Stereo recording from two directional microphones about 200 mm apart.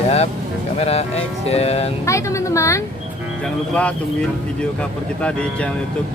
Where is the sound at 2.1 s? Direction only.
15° left (ahead or behind).